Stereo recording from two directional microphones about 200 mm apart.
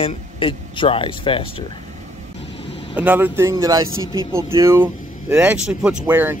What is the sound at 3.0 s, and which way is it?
Speech, 10° right (ahead or behind).